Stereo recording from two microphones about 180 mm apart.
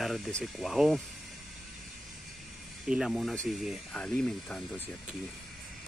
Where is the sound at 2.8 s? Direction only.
5° right (ahead or behind).